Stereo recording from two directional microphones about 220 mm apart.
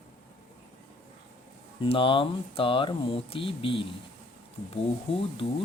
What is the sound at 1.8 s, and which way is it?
Speech, 25° left (ahead or behind).